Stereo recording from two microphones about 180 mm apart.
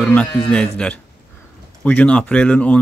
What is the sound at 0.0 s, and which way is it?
Speech, 5° left (ahead or behind).